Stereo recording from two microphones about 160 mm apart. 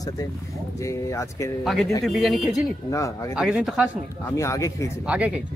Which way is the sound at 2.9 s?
20° left (ahead or behind).